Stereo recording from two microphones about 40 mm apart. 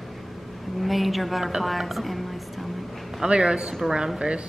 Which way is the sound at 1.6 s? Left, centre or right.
Centre.